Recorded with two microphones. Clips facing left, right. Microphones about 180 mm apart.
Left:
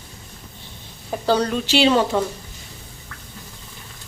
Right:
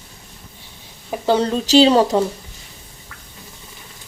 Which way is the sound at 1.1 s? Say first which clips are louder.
Right 2 dB; 20° right (ahead or behind).